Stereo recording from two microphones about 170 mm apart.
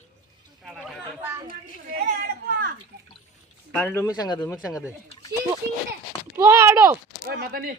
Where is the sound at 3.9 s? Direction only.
20° left (ahead or behind).